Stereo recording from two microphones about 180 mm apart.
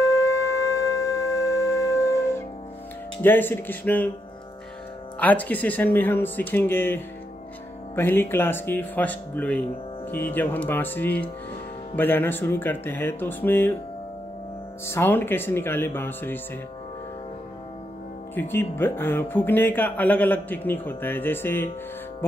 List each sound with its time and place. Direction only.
0.0 s shofar: 15° left (ahead or behind)
3.2 s speech: 10° left (ahead or behind)
5.2 s speech: 10° left (ahead or behind)
14.9 s speech: 10° left (ahead or behind)
18.3 s speech: 10° left (ahead or behind)